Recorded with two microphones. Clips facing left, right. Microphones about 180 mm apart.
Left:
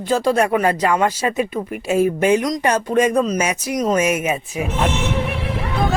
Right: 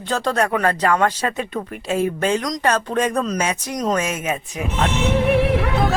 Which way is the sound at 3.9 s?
10° left (ahead or behind).